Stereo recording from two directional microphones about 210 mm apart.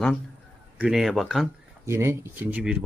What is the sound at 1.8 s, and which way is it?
Speech, 15° right (ahead or behind).